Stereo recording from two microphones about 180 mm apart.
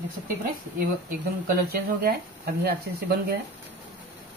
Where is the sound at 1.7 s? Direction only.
55° right (ahead or behind).